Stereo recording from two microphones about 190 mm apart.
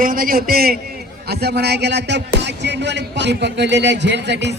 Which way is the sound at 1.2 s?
60° right (ahead or behind).